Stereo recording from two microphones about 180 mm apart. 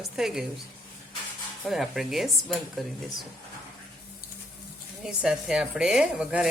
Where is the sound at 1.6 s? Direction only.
Centre (ahead or behind).